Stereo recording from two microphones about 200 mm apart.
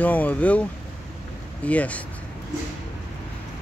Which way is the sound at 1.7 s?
5° left (ahead or behind).